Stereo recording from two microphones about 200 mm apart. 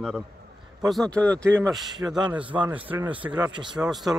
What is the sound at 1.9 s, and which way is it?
Speech, 20° right (ahead or behind).